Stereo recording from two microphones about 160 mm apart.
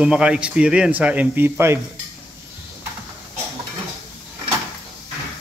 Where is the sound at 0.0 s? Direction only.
5° right (ahead or behind).